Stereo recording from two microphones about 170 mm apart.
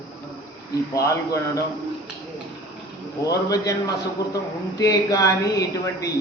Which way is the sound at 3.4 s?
20° left (ahead or behind).